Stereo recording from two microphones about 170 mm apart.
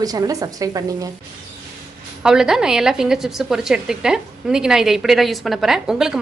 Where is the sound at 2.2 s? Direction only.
5° right (ahead or behind).